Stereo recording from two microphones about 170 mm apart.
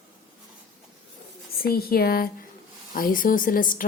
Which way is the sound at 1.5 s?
65° left (ahead or behind).